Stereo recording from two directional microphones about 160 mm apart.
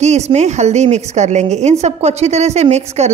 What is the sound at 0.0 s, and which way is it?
A woman's voice, 45° right (ahead or behind).